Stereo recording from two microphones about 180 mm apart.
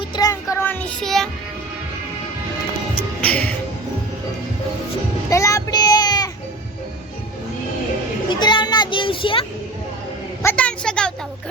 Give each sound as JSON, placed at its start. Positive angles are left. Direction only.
{"t": 0.2, "sound": "child singing", "side_deg": 20}
{"t": 0.5, "sound": "child singing", "side_deg": 10}
{"t": 3.2, "sound": "speech", "side_deg": 10}
{"t": 5.3, "sound": "child singing", "side_deg": 15}
{"t": 8.3, "sound": "children playing", "side_deg": 25}
{"t": 10.4, "sound": "a sound", "side_deg": 5}